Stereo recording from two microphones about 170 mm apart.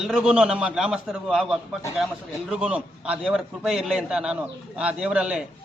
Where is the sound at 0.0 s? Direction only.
5° right (ahead or behind).